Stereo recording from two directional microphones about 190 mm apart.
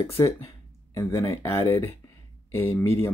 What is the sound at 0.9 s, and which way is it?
Speech, 15° left (ahead or behind).